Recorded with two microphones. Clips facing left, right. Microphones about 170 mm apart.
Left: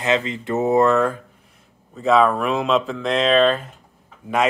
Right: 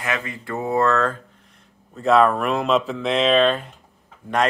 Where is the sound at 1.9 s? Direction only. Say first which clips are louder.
Even; centre (ahead or behind).